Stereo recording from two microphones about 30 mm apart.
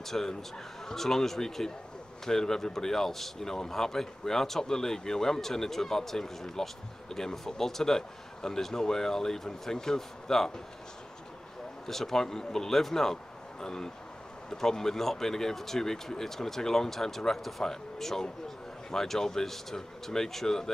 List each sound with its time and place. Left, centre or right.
0.0 s a man's voice: centre
11.9 s a man's voice: centre